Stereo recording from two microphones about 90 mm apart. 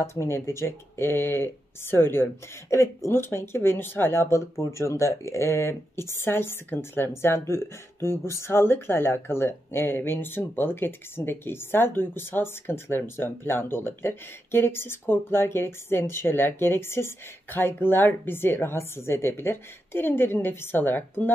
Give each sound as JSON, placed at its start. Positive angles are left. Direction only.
{"t": 0.0, "sound": "speech", "side_deg": 30}